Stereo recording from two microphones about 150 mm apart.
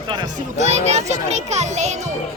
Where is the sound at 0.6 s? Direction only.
45° right (ahead or behind).